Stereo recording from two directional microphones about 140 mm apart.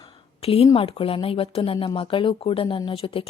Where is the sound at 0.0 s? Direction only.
45° left (ahead or behind).